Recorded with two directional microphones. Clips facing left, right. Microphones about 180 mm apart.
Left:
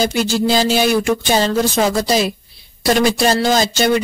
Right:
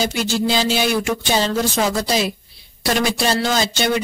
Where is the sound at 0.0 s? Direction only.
45° left (ahead or behind).